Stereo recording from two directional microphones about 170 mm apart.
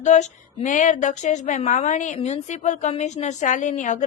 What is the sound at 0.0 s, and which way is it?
A woman's voice, 45° left (ahead or behind).